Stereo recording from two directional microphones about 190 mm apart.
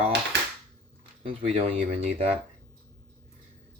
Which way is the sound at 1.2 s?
30° right (ahead or behind).